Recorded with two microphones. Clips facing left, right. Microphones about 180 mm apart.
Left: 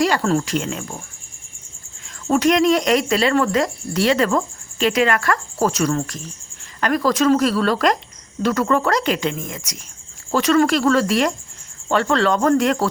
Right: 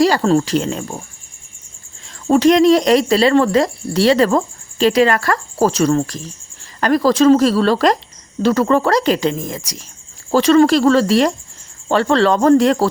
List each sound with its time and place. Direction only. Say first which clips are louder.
0.0 s speech: right 5 dB; 30° right (ahead or behind)
2.2 s speech: right 5 dB; 30° right (ahead or behind)